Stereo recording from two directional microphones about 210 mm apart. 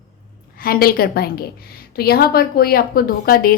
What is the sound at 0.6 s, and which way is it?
A woman's voice, 45° left (ahead or behind).